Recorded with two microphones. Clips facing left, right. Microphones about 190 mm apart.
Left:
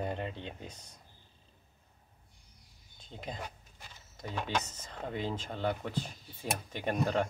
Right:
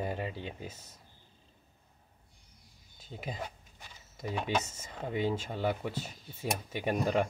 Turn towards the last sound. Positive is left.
turn(degrees=-10)  # may be behind; listen again after turning